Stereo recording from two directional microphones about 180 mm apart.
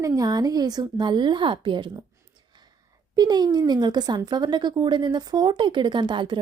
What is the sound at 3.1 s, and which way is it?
A woman's voice, 20° right (ahead or behind).